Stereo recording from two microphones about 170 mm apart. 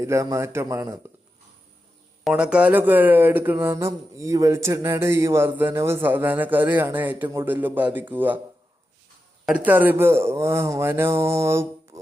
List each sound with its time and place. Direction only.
0.0 s speech: 20° right (ahead or behind)
2.2 s speech: 5° right (ahead or behind)
9.5 s speech: 10° right (ahead or behind)